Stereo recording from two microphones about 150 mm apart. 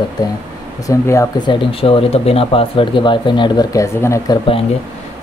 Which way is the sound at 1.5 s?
35° left (ahead or behind).